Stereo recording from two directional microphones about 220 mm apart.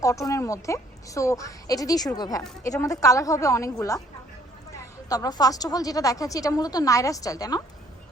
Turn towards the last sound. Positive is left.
turn(degrees=15)  # may be behind; listen again after turning